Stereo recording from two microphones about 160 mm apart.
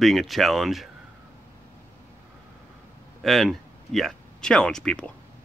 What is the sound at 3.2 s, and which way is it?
Speech, centre (ahead or behind).